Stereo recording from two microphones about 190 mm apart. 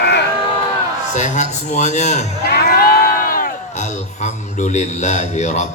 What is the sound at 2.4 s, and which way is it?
Crowd, 55° left (ahead or behind).